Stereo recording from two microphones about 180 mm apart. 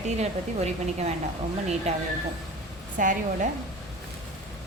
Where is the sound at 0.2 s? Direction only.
35° right (ahead or behind).